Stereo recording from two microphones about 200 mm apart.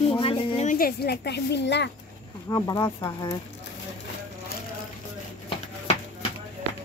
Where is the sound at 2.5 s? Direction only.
15° left (ahead or behind).